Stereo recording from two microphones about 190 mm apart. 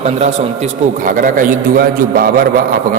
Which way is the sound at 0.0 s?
35° right (ahead or behind).